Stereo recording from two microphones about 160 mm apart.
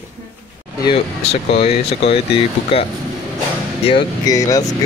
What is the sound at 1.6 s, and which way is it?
Speech, 40° left (ahead or behind).